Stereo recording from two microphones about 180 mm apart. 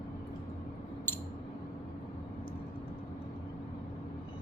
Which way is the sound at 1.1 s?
10° left (ahead or behind).